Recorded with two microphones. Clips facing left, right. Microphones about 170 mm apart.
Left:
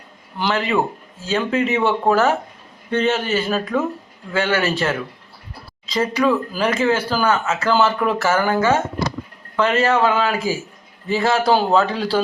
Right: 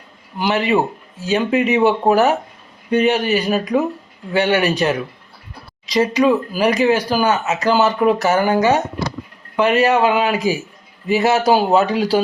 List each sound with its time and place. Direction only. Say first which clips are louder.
0.3 s speech: right 3 dB; 15° right (ahead or behind)